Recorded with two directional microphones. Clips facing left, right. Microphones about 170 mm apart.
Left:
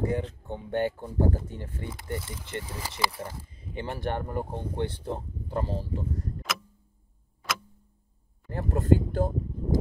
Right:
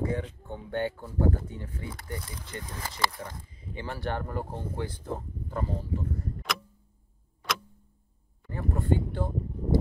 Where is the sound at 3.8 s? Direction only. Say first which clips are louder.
Left 2 dB; 20° left (ahead or behind).